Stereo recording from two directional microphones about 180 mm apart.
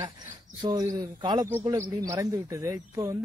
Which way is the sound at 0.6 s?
20° right (ahead or behind).